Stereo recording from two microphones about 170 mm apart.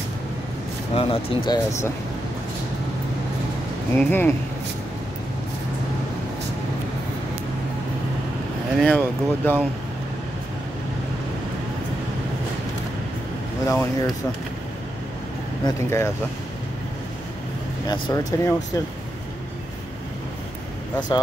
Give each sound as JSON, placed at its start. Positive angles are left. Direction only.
{"t": 0.9, "sound": "speech", "side_deg": 30}
{"t": 3.9, "sound": "speech", "side_deg": 10}
{"t": 8.7, "sound": "speech", "side_deg": 10}
{"t": 13.7, "sound": "speech", "side_deg": 20}
{"t": 15.6, "sound": "speech", "side_deg": 15}
{"t": 17.8, "sound": "speech", "side_deg": 25}